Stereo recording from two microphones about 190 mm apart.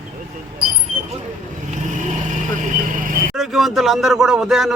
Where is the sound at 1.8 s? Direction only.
40° right (ahead or behind).